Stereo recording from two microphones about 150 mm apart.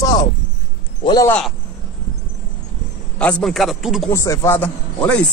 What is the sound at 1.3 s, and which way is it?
Speech, 5° left (ahead or behind).